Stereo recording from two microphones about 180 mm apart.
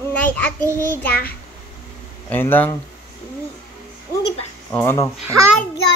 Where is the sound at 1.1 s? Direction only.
55° left (ahead or behind).